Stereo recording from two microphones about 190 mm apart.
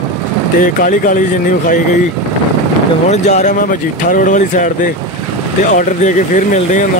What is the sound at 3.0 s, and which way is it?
Speech, 35° left (ahead or behind).